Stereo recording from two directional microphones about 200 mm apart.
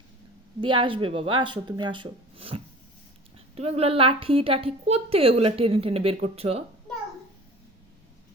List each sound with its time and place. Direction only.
0.6 s a woman's voice: 25° right (ahead or behind)